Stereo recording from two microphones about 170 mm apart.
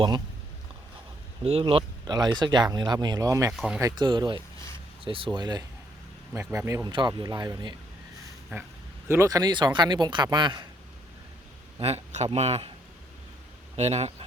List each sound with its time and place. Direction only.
1.5 s speech: 35° right (ahead or behind)
3.5 s speech: centre (ahead or behind)
3.8 s speech: 20° right (ahead or behind)
6.3 s speech: 15° right (ahead or behind)
9.0 s speech: 15° right (ahead or behind)
11.8 s speech: 40° right (ahead or behind)
13.7 s speech: 40° right (ahead or behind)